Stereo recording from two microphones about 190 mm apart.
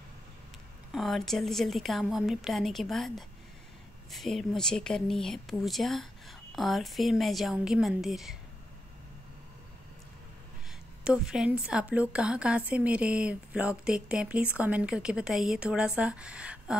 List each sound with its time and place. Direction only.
0.9 s a woman's voice: centre (ahead or behind)
11.1 s a woman's voice: 5° right (ahead or behind)